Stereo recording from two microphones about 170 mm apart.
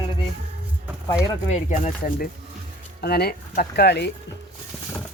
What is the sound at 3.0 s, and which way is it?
Speech, 70° left (ahead or behind).